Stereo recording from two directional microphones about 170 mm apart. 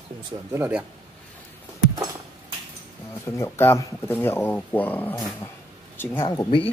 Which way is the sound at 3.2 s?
15° left (ahead or behind).